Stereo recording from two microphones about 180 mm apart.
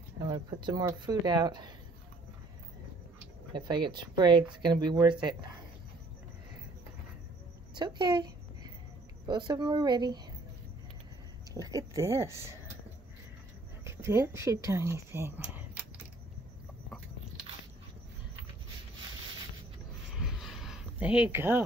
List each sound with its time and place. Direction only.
0.2 s speech: 20° right (ahead or behind)
3.5 s speech: 25° right (ahead or behind)
7.8 s speech: 25° right (ahead or behind)
11.5 s speech: 20° right (ahead or behind)
13.8 s speech: 15° right (ahead or behind)
20.2 s a sound: centre (ahead or behind)
21.3 s speech: 10° right (ahead or behind)